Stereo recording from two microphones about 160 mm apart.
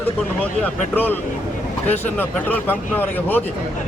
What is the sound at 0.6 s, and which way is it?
Speech, 10° left (ahead or behind).